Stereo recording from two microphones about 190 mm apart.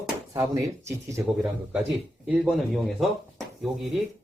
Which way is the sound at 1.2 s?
5° right (ahead or behind).